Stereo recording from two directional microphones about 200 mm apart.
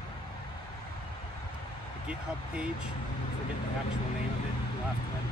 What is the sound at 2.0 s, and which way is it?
Speech, 5° right (ahead or behind).